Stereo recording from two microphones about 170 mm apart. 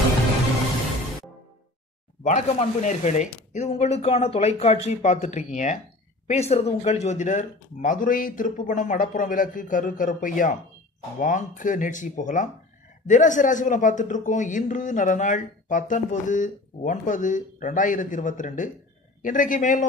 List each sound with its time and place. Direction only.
2.2 s speech: 45° left (ahead or behind)